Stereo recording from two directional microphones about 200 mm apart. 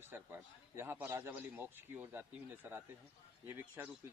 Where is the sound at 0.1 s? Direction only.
10° right (ahead or behind).